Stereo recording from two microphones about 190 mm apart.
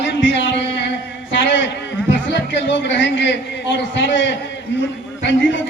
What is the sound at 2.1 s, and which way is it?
A man's voice, 70° left (ahead or behind).